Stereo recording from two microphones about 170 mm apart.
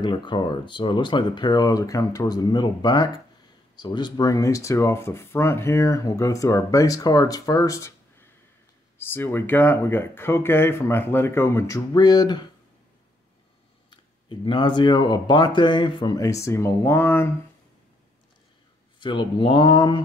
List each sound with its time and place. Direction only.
0.0 s speech: 30° left (ahead or behind)
13.8 s speech: 30° left (ahead or behind)
18.9 s speech: 30° left (ahead or behind)